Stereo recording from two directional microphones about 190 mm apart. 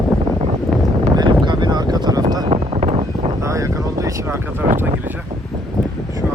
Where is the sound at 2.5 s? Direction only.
35° right (ahead or behind).